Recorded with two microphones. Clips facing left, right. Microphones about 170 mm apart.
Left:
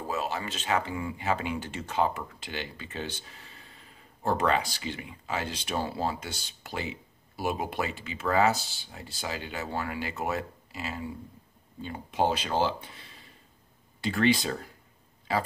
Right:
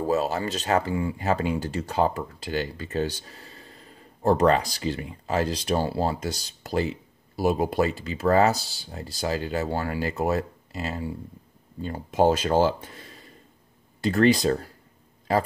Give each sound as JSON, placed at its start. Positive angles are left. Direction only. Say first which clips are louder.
{"t": 0.1, "sound": "speech", "louder": "right 6 dB", "side_deg": -40}